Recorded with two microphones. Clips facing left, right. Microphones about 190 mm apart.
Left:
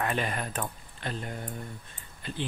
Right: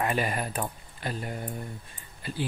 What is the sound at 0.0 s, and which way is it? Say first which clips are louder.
Speech: right 2 dB; 10° right (ahead or behind).